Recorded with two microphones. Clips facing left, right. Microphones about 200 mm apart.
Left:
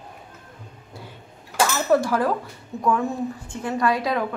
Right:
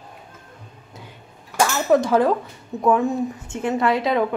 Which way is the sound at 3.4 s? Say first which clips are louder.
Right 1 dB; 25° right (ahead or behind).